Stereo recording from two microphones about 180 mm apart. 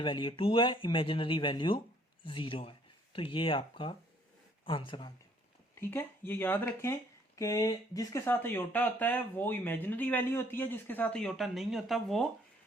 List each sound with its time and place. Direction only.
0.0 s speech: 30° left (ahead or behind)
5.8 s speech: 15° left (ahead or behind)